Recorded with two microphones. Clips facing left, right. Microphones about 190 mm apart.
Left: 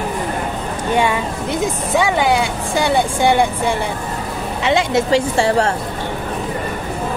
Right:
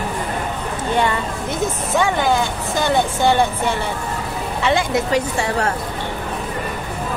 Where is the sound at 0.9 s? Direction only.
15° left (ahead or behind).